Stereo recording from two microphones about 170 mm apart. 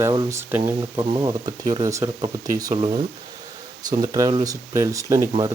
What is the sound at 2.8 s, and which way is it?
Speech, 30° right (ahead or behind).